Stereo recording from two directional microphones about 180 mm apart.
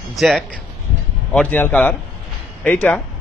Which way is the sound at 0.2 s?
5° left (ahead or behind).